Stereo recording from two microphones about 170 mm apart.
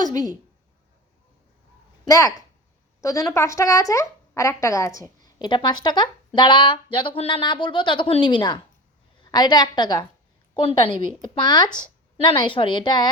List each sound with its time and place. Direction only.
0.0 s speech: 20° left (ahead or behind)
2.0 s speech: 20° left (ahead or behind)
11.3 s speech: 25° left (ahead or behind)